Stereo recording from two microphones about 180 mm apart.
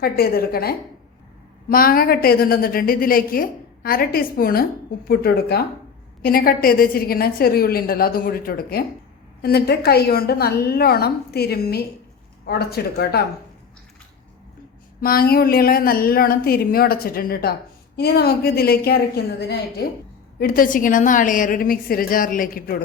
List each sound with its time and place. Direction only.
0.0 s speech: 60° left (ahead or behind)
15.0 s speech: 55° left (ahead or behind)
20.4 s a woman's voice: 50° left (ahead or behind)